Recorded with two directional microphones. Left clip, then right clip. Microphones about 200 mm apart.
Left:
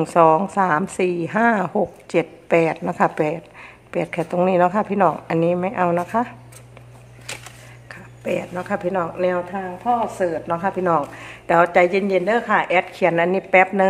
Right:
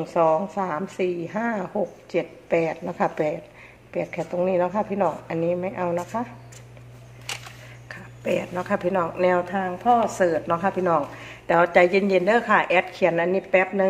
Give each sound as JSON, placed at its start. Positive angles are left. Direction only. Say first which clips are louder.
{"t": 0.0, "sound": "a woman's voice", "louder": "left 6 dB", "side_deg": 25}
{"t": 7.9, "sound": "speech", "louder": "left 1 dB", "side_deg": 0}
{"t": 9.8, "sound": "speech", "louder": "right 1 dB", "side_deg": -25}
{"t": 10.8, "sound": "speech", "louder": "left 3 dB", "side_deg": 10}